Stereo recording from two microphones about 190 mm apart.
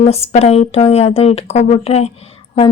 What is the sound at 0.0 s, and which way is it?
Speech, 35° left (ahead or behind).